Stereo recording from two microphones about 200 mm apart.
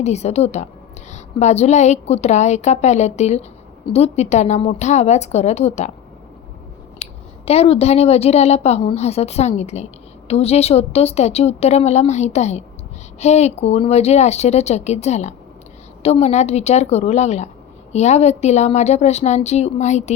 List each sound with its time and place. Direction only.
0.0 s a woman's voice: 35° left (ahead or behind)
7.0 s a woman's voice: 30° left (ahead or behind)